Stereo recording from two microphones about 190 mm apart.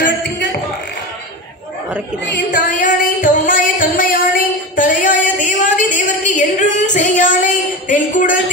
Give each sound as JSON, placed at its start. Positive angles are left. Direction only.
{"t": 2.7, "sound": "music", "side_deg": 45}